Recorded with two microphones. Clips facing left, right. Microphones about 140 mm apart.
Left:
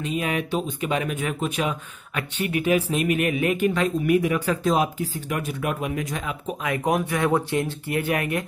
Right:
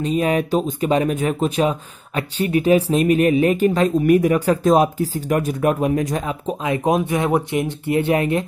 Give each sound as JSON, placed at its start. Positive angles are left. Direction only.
{"t": 0.0, "sound": "speech", "side_deg": -35}